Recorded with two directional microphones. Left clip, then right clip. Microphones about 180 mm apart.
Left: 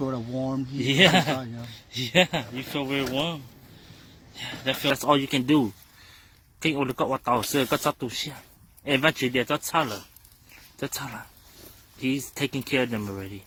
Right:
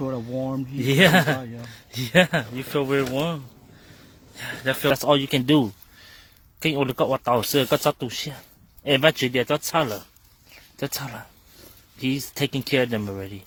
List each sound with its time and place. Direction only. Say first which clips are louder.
0.0 s speech: right 2 dB; centre (ahead or behind)
0.8 s speech: right 2 dB; 35° right (ahead or behind)
4.6 s speech: right 3 dB; 40° right (ahead or behind)